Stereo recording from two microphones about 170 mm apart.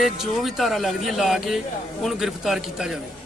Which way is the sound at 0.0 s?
Centre (ahead or behind).